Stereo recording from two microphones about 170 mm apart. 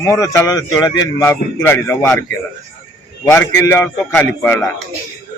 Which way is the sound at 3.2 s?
15° left (ahead or behind).